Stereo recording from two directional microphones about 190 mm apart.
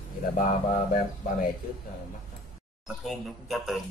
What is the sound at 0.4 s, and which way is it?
Speech, 45° left (ahead or behind).